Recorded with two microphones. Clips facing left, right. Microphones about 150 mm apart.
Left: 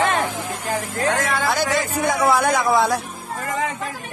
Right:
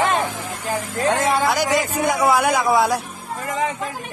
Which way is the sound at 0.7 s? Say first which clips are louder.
Right 2 dB; 25° right (ahead or behind).